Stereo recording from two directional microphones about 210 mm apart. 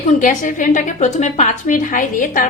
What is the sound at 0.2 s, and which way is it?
A woman's voice, 40° left (ahead or behind).